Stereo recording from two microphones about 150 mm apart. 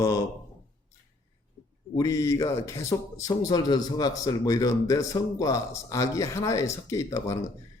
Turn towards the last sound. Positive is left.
turn(degrees=20)  # may be behind; listen again after turning